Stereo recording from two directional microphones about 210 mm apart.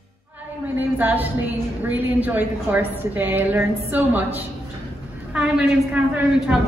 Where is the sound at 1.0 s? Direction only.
10° right (ahead or behind).